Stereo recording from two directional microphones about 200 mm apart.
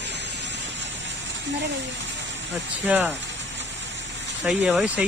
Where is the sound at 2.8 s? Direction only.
10° right (ahead or behind).